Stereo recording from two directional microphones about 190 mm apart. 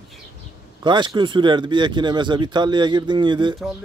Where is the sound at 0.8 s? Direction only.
25° right (ahead or behind).